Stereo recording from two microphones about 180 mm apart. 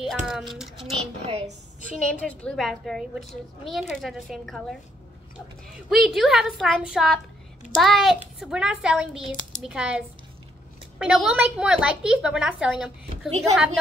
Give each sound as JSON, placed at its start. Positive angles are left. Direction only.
{"t": 0.0, "sound": "a woman's voice", "side_deg": 0}
{"t": 0.7, "sound": "a child's voice", "side_deg": -35}
{"t": 2.0, "sound": "a woman's voice", "side_deg": 5}
{"t": 5.9, "sound": "a woman's voice", "side_deg": 0}